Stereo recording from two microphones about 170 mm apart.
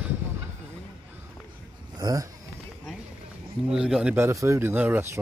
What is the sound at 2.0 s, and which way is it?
Speech, 20° right (ahead or behind).